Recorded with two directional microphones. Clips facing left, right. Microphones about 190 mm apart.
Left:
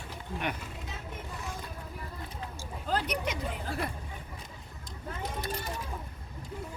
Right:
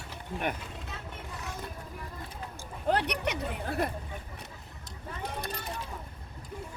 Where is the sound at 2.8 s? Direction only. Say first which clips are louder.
Right 3 dB; 70° right (ahead or behind).